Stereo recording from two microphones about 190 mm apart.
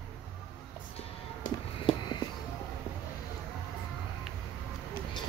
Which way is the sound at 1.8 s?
25° left (ahead or behind).